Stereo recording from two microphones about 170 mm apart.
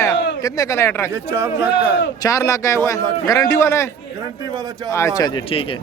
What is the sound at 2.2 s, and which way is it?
A man's voice, 20° left (ahead or behind).